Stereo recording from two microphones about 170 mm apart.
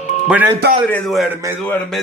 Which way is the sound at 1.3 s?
15° right (ahead or behind).